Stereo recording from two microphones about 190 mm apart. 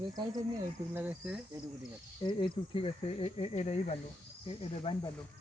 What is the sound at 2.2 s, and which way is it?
Cricket, 25° left (ahead or behind).